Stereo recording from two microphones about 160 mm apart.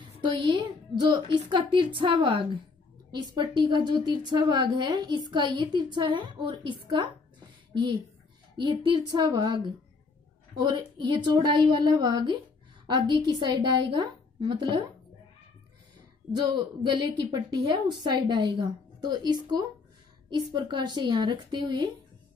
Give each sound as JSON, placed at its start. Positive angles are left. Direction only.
{"t": 0.2, "sound": "a woman's voice", "side_deg": -30}
{"t": 16.3, "sound": "a woman's voice", "side_deg": -25}